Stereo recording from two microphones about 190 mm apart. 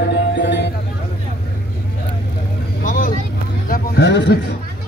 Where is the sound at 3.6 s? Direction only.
50° left (ahead or behind).